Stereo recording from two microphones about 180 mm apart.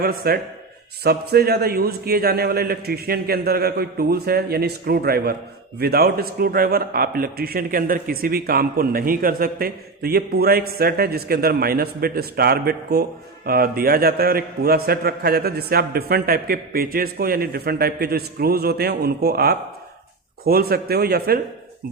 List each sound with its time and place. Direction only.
0.0 s a man's voice: 60° right (ahead or behind)